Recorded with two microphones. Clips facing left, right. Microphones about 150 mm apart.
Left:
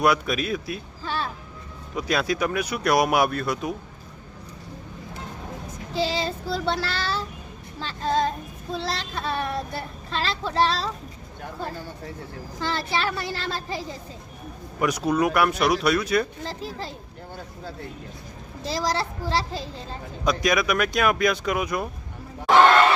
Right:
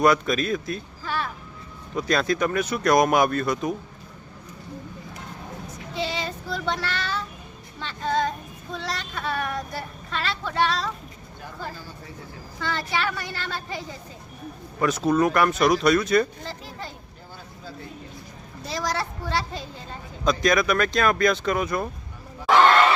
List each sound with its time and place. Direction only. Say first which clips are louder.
0.0 s speech: right 2 dB; 5° left (ahead or behind)
1.0 s music: even; 30° left (ahead or behind)
2.0 s speech: right 1 dB; 10° left (ahead or behind)
5.9 s child singing: left 4 dB; 30° left (ahead or behind)
7.8 s speech: left 1 dB; 35° left (ahead or behind)
12.5 s speech: left 1 dB; 30° left (ahead or behind)
14.8 s speech: right 1 dB; 15° left (ahead or behind)
18.7 s a child's voice: left 2 dB; 30° left (ahead or behind)
20.4 s speech: right 2 dB; 10° left (ahead or behind)